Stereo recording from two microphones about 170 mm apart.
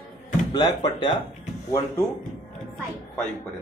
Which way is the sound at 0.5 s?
25° left (ahead or behind).